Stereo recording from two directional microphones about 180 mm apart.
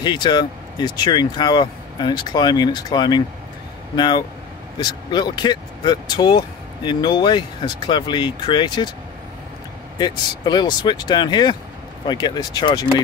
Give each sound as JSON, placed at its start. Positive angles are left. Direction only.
{"t": 0.0, "sound": "speech", "side_deg": 25}
{"t": 9.9, "sound": "speech", "side_deg": 25}